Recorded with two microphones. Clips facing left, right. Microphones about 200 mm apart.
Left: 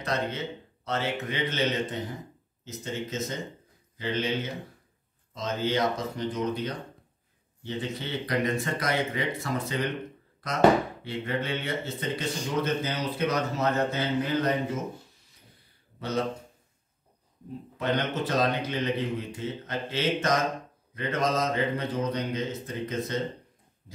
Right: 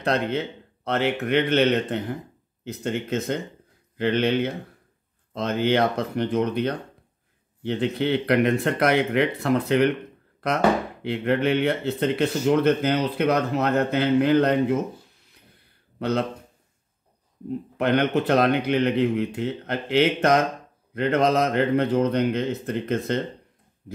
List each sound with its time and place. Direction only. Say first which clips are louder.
0.0 s speech: right 6 dB; 60° right (ahead or behind)
16.0 s speech: right 5 dB; 60° right (ahead or behind)
17.7 s speech: right 7 dB; 60° right (ahead or behind)